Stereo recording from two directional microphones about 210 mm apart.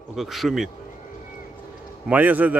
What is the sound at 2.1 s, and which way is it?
Speech, 10° right (ahead or behind).